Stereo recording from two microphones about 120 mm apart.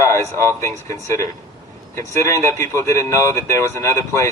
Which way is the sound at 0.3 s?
25° left (ahead or behind).